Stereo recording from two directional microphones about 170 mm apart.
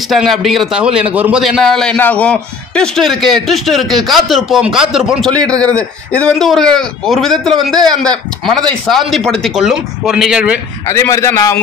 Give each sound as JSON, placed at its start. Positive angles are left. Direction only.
{"t": 0.1, "sound": "a man's voice", "side_deg": 0}
{"t": 10.9, "sound": "a man's voice", "side_deg": 15}